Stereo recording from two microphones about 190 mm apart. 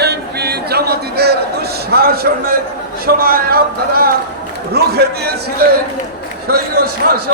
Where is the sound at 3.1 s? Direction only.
50° right (ahead or behind).